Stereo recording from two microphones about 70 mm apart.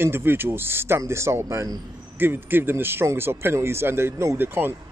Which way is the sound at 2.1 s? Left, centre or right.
Right.